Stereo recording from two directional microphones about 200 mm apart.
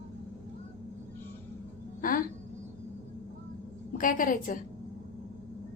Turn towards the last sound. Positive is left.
turn(degrees=40)  # may be behind; listen again after turning